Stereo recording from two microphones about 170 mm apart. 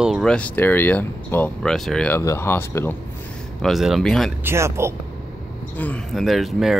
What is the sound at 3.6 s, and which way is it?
Speech, centre (ahead or behind).